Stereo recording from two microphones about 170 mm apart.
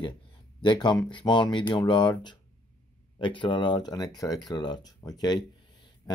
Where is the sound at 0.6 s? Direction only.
25° left (ahead or behind).